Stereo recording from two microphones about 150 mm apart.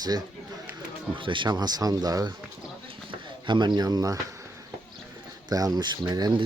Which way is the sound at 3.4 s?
30° right (ahead or behind).